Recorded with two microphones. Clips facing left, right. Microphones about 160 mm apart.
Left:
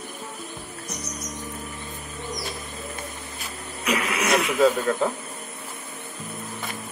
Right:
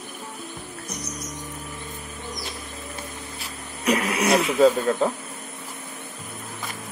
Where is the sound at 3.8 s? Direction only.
40° right (ahead or behind).